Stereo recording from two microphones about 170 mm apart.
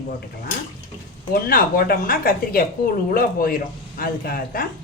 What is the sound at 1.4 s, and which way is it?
A woman's voice, 60° left (ahead or behind).